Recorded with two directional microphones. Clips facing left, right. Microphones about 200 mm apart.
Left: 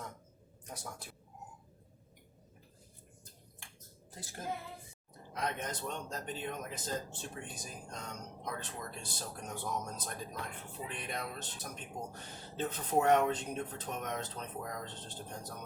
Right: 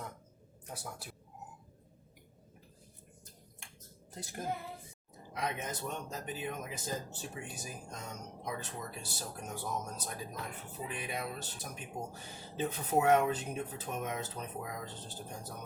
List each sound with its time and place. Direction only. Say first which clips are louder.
0.7 s speech: right 1 dB; 5° right (ahead or behind)
4.1 s a woman's voice: right 4 dB; 20° right (ahead or behind)
5.3 s speech: even; 10° right (ahead or behind)